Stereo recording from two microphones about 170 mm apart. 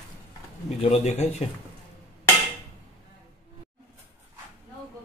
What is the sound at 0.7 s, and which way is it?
Speech, 40° left (ahead or behind).